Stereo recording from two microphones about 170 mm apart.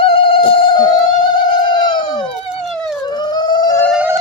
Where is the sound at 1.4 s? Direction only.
25° left (ahead or behind).